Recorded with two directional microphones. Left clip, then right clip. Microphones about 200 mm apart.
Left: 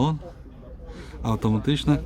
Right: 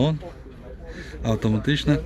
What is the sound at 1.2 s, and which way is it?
Speech, 5° left (ahead or behind).